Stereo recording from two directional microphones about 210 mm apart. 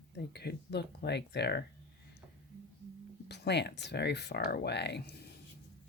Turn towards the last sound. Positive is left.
turn(degrees=50)  # may be behind; listen again after turning